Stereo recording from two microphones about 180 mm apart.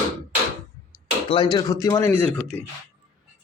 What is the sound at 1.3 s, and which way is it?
Speech, 25° left (ahead or behind).